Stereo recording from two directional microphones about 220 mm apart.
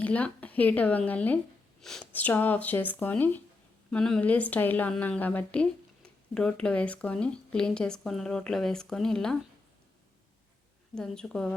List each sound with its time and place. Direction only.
0.0 s a woman's voice: 5° left (ahead or behind)
10.9 s a woman's voice: 5° left (ahead or behind)